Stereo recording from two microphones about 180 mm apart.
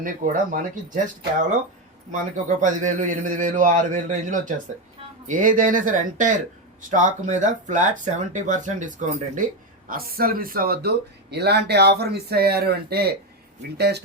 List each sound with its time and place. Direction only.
0.0 s speech: 50° right (ahead or behind); by 14.0 s 65° right (ahead or behind)